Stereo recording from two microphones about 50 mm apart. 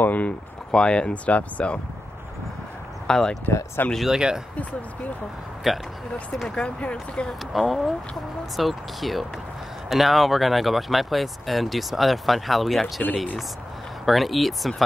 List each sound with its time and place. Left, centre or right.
0.0 s speech: left
0.7 s speech: centre
3.1 s speech: centre
3.8 s speech: left
4.1 s speech: centre
5.7 s speech: centre
6.5 s speech: left
7.2 s speech: centre
14.0 s speech: centre